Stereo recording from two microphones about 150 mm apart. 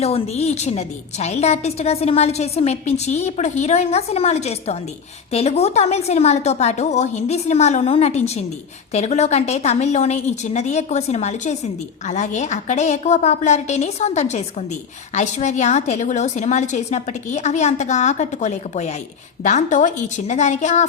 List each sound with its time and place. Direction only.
0.0 s a woman's voice: 45° left (ahead or behind)